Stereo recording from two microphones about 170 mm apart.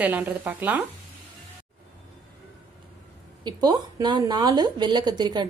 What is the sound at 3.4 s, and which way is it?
Speech, 25° right (ahead or behind).